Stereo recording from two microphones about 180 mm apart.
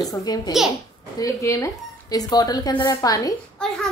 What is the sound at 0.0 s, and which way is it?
A woman's voice, 20° left (ahead or behind).